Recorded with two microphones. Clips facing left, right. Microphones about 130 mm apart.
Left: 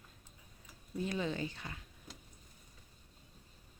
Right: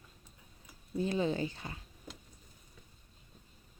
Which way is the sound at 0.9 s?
30° right (ahead or behind).